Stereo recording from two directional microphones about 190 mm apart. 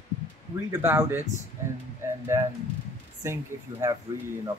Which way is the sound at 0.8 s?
10° right (ahead or behind).